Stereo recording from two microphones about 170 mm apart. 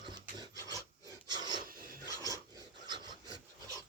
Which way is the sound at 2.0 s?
20° right (ahead or behind).